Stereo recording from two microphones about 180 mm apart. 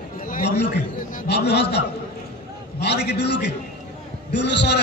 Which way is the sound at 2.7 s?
70° left (ahead or behind).